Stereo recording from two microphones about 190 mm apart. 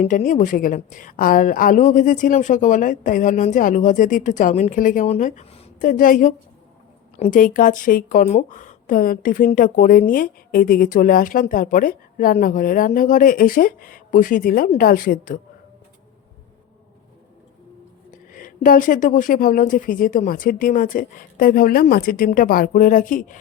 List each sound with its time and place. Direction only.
0.0 s a woman's voice: 40° left (ahead or behind)
5.8 s a woman's voice: 45° left (ahead or behind)
18.1 s a woman's voice: 45° left (ahead or behind)